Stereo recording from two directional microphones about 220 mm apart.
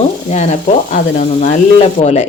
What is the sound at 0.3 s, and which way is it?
Frying, 30° left (ahead or behind).